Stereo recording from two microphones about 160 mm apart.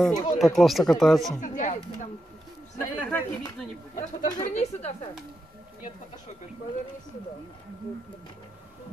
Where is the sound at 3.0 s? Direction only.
15° left (ahead or behind).